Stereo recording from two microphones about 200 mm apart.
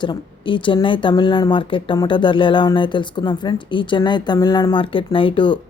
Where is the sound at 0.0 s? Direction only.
25° left (ahead or behind).